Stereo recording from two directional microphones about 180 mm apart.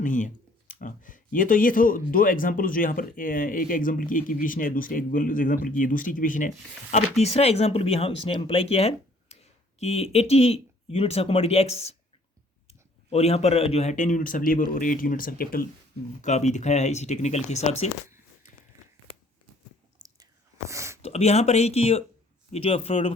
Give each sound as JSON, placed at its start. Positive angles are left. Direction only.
{"t": 0.0, "sound": "speech", "side_deg": 45}
{"t": 6.9, "sound": "speech", "side_deg": 35}
{"t": 13.1, "sound": "speech", "side_deg": 35}
{"t": 16.2, "sound": "speech", "side_deg": 40}
{"t": 20.0, "sound": "chewing", "side_deg": -25}
{"t": 20.7, "sound": "a sound", "side_deg": -15}
{"t": 21.0, "sound": "speech", "side_deg": 35}